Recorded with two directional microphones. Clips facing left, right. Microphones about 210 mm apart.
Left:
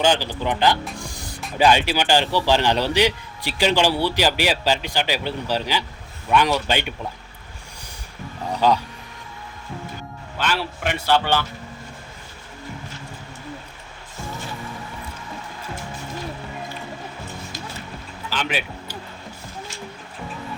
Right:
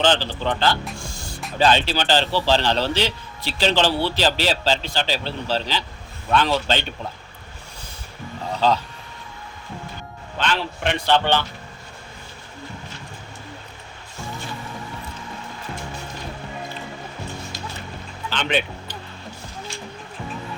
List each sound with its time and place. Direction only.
0.0 s a man's voice: 10° left (ahead or behind)
0.9 s music: 15° left (ahead or behind)
1.5 s a man's voice: 10° left (ahead or behind)
8.6 s a man's voice: 10° left (ahead or behind)
10.3 s a man's voice: 10° left (ahead or behind)
18.3 s music: 5° left (ahead or behind)